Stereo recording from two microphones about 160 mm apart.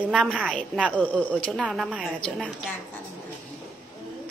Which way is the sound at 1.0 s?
10° left (ahead or behind).